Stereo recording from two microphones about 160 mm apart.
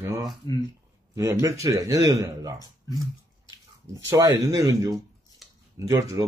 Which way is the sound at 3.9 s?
20° right (ahead or behind).